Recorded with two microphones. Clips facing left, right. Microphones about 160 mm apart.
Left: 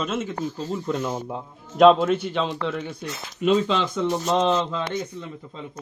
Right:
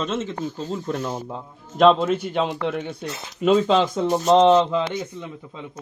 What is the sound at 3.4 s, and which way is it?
Speech, 40° right (ahead or behind).